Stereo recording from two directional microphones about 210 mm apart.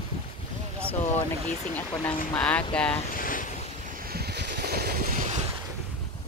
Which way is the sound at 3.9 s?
45° right (ahead or behind).